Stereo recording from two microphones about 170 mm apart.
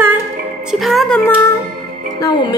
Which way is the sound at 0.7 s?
Centre (ahead or behind).